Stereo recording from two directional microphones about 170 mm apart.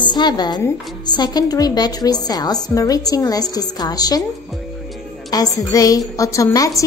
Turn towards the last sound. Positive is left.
turn(degrees=20)  # may be behind; listen again after turning